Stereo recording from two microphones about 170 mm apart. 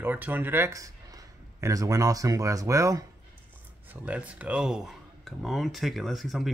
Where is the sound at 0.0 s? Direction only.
10° right (ahead or behind).